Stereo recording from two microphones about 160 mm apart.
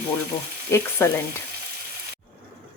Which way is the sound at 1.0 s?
15° left (ahead or behind).